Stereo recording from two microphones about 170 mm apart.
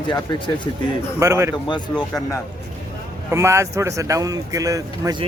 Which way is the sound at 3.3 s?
15° right (ahead or behind).